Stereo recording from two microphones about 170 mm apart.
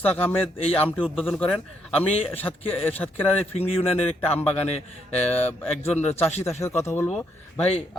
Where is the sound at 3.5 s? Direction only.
35° left (ahead or behind).